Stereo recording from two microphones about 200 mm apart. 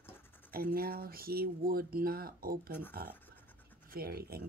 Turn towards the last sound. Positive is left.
turn(degrees=-50)  # may be behind; listen again after turning